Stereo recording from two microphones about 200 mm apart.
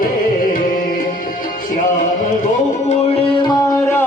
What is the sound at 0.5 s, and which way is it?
Music, 45° left (ahead or behind).